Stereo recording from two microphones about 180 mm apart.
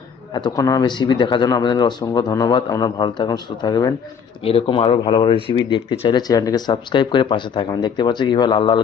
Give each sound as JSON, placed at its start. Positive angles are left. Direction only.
{"t": 0.3, "sound": "speech", "side_deg": 20}
{"t": 4.4, "sound": "speech", "side_deg": 30}